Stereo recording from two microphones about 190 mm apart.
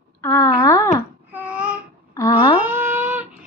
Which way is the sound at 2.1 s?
20° left (ahead or behind).